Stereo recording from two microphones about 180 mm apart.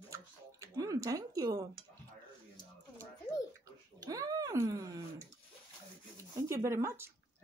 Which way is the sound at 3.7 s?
20° right (ahead or behind).